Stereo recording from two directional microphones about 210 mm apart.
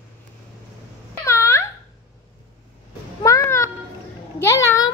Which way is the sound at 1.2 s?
15° left (ahead or behind).